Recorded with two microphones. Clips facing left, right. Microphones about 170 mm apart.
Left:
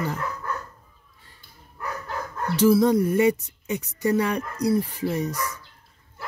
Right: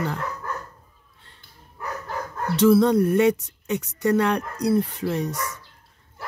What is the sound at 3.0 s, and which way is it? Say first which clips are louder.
Speech: right 2 dB; 70° right (ahead or behind).